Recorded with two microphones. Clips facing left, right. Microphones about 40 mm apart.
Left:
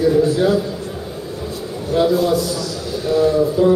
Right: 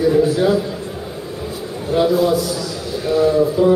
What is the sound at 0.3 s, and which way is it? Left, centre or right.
Speech, centre.